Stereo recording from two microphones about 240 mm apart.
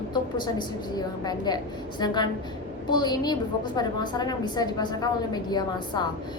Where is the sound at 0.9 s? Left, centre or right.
Centre.